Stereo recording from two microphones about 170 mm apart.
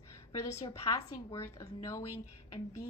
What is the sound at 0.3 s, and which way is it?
A woman's voice, 20° left (ahead or behind).